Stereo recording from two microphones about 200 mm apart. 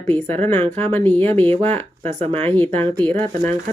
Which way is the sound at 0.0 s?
10° left (ahead or behind).